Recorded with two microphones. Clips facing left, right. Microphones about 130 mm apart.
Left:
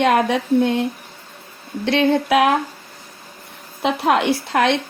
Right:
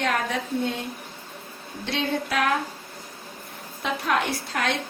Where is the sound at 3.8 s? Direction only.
85° left.